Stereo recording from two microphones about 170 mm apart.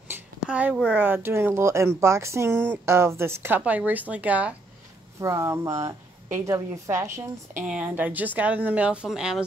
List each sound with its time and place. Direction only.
0.1 s speech: 10° right (ahead or behind)